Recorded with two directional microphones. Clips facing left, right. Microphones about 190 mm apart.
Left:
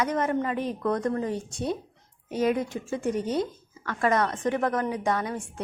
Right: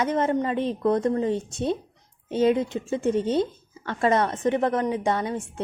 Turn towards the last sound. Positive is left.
turn(degrees=-25)  # may be behind; listen again after turning